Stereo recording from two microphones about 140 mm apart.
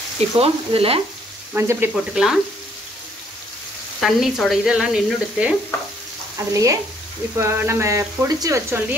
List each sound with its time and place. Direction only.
0.4 s speech: 45° right (ahead or behind)
1.5 s speech: 15° right (ahead or behind)
2.1 s speech: 5° right (ahead or behind)
4.0 s speech: centre (ahead or behind)
6.3 s frying: 25° right (ahead or behind)
7.3 s speech: 20° right (ahead or behind)